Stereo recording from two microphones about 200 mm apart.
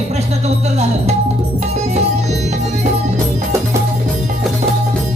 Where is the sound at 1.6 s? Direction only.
35° right (ahead or behind).